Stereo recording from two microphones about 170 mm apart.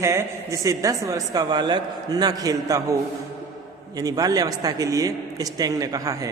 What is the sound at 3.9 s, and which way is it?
A man's voice, 20° right (ahead or behind).